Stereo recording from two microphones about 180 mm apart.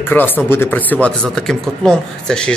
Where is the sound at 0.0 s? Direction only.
10° left (ahead or behind).